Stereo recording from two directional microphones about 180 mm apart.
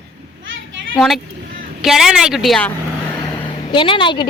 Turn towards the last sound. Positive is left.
turn(degrees=25)  # may be behind; listen again after turning